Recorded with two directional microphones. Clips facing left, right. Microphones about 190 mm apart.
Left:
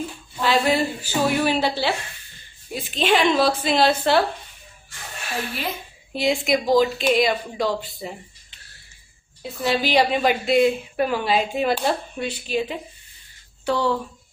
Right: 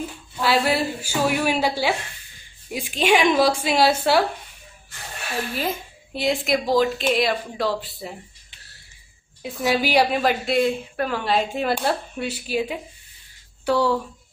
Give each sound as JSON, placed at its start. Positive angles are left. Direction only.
{"t": 0.4, "sound": "a woman's voice", "side_deg": -5}
{"t": 6.1, "sound": "a woman's voice", "side_deg": 0}
{"t": 9.4, "sound": "a woman's voice", "side_deg": -10}